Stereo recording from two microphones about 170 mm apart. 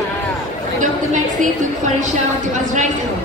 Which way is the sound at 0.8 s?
45° right (ahead or behind).